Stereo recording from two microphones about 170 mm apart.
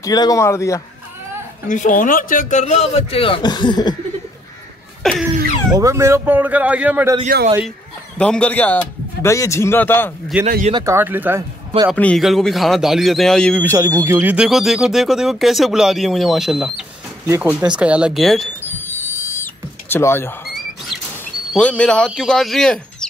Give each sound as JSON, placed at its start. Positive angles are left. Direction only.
{"t": 0.0, "sound": "a man's voice", "side_deg": 20}
{"t": 1.7, "sound": "speech", "side_deg": 50}
{"t": 5.0, "sound": "speech", "side_deg": 5}
{"t": 5.7, "sound": "speech", "side_deg": -20}
{"t": 8.2, "sound": "a man's voice", "side_deg": 5}
{"t": 10.3, "sound": "speech", "side_deg": -10}
{"t": 10.7, "sound": "speech", "side_deg": -20}
{"t": 11.9, "sound": "speech", "side_deg": 5}
{"t": 13.6, "sound": "speech", "side_deg": -15}
{"t": 18.6, "sound": "owl", "side_deg": 10}
{"t": 21.5, "sound": "speech", "side_deg": 5}